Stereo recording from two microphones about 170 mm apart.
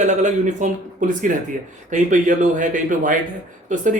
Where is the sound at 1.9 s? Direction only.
45° right (ahead or behind).